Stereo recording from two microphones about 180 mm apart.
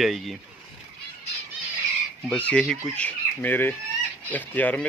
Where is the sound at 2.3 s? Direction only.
5° left (ahead or behind).